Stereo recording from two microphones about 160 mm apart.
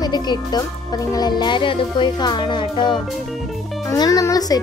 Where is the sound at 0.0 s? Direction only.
25° left (ahead or behind).